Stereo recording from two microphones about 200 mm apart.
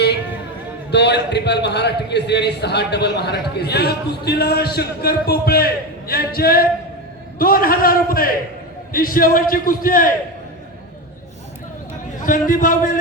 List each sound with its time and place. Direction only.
0.9 s a man's voice: 60° left (ahead or behind)
12.2 s a man's voice: 45° left (ahead or behind)